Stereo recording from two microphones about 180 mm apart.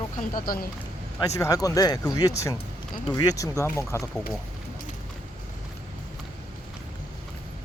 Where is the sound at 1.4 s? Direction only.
20° left (ahead or behind).